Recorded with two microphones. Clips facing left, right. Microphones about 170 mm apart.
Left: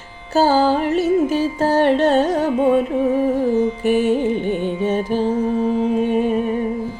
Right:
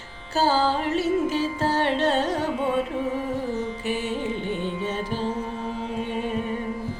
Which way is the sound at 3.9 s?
50° left (ahead or behind).